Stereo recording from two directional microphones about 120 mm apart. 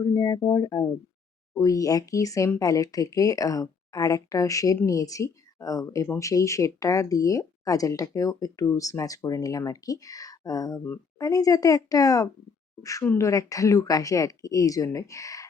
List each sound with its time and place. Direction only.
0.0 s speech: 30° left (ahead or behind)